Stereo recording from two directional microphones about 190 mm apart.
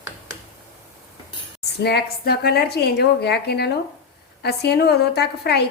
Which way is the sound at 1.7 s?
60° left (ahead or behind).